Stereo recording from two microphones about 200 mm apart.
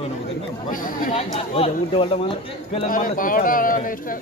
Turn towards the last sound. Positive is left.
turn(degrees=45)  # may be behind; listen again after turning